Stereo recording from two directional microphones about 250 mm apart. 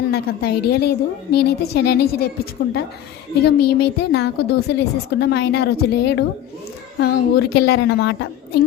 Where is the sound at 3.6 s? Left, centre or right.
Left.